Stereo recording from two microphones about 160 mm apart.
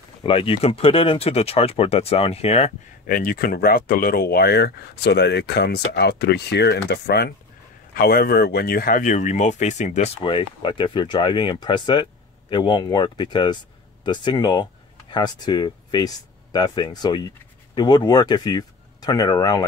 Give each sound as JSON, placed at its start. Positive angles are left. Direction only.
{"t": 0.2, "sound": "speech", "side_deg": 35}
{"t": 3.1, "sound": "speech", "side_deg": 65}
{"t": 7.9, "sound": "speech", "side_deg": 70}
{"t": 10.6, "sound": "speech", "side_deg": 30}